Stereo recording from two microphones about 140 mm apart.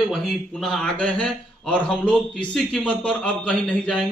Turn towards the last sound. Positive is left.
turn(degrees=5)  # may be behind; listen again after turning